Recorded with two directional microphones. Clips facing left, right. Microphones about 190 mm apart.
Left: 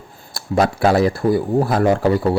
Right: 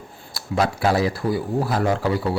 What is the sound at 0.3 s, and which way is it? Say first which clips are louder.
Speech: left 5 dB; 50° left (ahead or behind).